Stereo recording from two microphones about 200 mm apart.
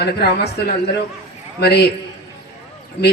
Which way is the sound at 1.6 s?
55° left (ahead or behind).